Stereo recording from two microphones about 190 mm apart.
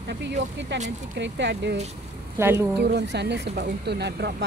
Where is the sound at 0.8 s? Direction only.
65° right (ahead or behind).